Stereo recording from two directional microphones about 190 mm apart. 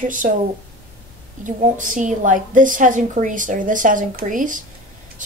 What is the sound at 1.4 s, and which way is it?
Speech, 40° right (ahead or behind).